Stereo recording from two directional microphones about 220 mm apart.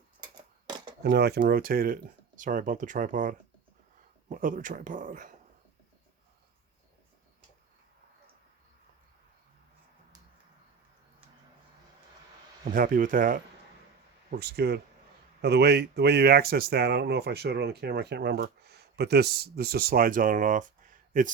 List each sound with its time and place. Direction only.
0.3 s a sound: 20° right (ahead or behind)
1.0 s speech: 45° right (ahead or behind)
12.6 s speech: 40° right (ahead or behind)